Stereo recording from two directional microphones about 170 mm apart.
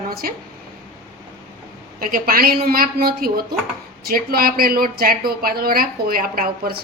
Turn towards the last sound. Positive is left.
turn(degrees=-60)  # may be behind; listen again after turning